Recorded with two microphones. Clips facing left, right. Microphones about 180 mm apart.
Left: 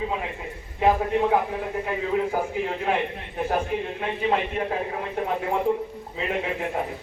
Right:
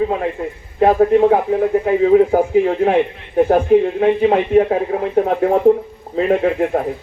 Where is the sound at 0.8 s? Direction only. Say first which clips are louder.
Right 10 dB; 55° right (ahead or behind).